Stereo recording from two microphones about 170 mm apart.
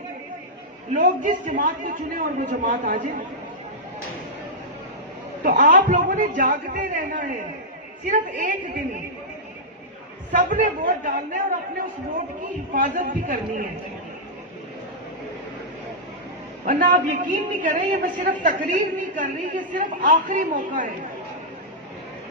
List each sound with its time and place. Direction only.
0.9 s a woman's voice: 50° right (ahead or behind)
5.4 s a woman's voice: 50° right (ahead or behind)
10.3 s a woman's voice: 50° right (ahead or behind)
16.6 s a woman's voice: 50° right (ahead or behind)